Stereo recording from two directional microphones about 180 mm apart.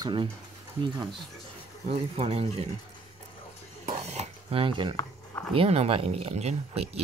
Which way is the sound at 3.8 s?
40° right (ahead or behind).